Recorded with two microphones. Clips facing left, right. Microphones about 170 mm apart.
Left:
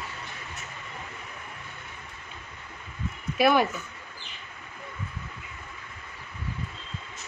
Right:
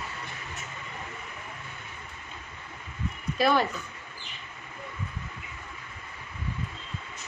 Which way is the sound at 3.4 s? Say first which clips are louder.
Left 3 dB; 10° left (ahead or behind).